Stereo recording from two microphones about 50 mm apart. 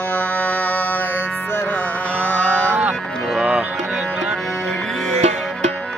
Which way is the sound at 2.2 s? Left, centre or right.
Left.